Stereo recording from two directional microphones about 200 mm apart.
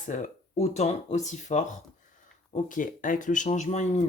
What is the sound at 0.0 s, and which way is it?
Speech, 35° left (ahead or behind).